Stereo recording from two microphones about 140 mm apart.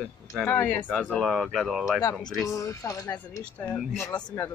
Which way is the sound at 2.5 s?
25° left (ahead or behind).